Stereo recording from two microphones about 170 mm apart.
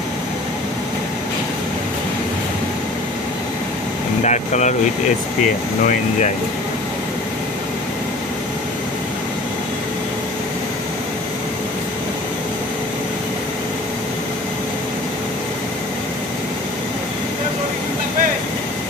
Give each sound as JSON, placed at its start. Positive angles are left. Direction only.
{"t": 4.2, "sound": "speech", "side_deg": 45}